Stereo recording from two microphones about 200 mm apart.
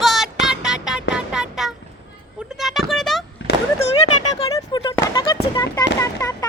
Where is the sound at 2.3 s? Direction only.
Centre (ahead or behind).